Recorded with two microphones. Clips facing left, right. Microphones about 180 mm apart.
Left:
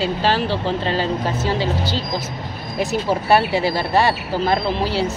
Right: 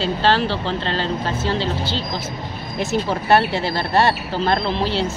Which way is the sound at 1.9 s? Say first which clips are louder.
Left 2 dB; 40° left (ahead or behind).